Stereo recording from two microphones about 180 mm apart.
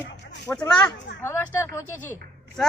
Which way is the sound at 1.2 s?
15° left (ahead or behind).